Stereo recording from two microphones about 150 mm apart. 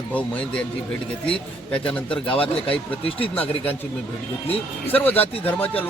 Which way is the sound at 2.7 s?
40° left (ahead or behind).